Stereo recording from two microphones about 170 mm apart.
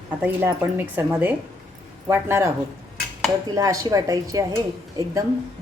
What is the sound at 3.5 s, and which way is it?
Speech, 20° right (ahead or behind).